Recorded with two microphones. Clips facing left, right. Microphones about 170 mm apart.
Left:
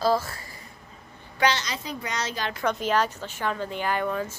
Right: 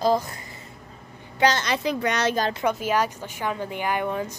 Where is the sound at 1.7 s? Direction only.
70° right (ahead or behind).